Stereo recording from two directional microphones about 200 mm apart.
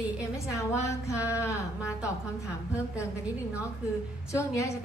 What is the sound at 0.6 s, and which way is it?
Speech, 15° left (ahead or behind).